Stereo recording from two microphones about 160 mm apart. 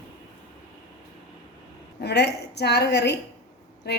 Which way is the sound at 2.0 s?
90° left.